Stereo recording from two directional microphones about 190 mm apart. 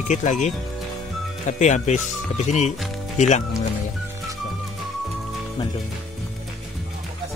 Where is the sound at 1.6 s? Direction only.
40° left (ahead or behind).